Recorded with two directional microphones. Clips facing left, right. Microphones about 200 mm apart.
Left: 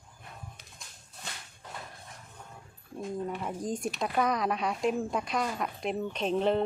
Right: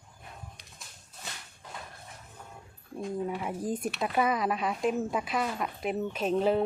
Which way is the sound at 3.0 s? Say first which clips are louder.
Right 2 dB; 5° right (ahead or behind).